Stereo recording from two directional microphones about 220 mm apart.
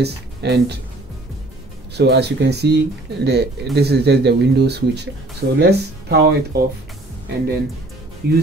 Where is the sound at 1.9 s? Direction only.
50° right (ahead or behind).